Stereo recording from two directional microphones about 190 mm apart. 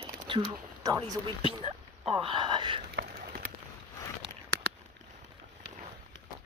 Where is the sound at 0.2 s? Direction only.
20° right (ahead or behind).